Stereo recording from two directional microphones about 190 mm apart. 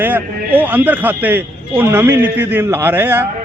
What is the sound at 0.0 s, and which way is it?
A man's voice, 10° right (ahead or behind).